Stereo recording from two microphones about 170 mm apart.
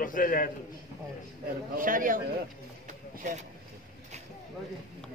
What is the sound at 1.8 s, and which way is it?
Speech, 55° right (ahead or behind).